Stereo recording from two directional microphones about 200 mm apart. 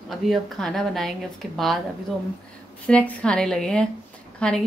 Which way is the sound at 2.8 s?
5° left (ahead or behind).